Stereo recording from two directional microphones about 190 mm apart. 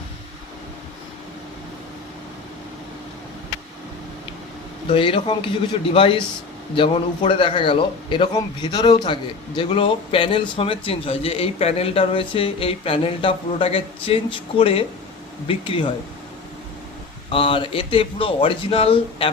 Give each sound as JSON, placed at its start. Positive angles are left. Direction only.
{"t": 4.9, "sound": "a man's voice", "side_deg": 25}
{"t": 17.3, "sound": "a man's voice", "side_deg": 25}